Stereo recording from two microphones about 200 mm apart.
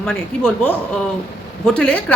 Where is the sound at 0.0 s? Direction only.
5° left (ahead or behind).